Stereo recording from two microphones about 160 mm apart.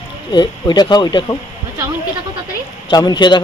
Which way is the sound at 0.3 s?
25° left (ahead or behind).